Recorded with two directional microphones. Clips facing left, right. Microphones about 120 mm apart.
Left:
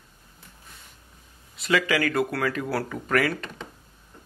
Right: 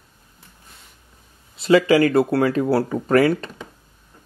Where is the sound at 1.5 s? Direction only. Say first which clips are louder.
Right 9 dB; 30° right (ahead or behind).